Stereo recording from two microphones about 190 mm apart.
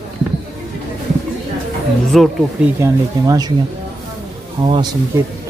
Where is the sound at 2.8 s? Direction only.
20° right (ahead or behind).